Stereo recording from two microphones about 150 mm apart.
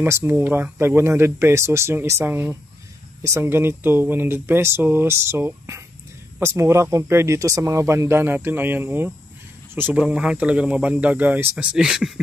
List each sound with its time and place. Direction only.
0.0 s speech: 15° right (ahead or behind)